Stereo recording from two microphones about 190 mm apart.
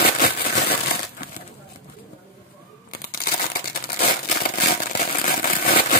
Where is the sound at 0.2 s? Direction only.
55° left (ahead or behind).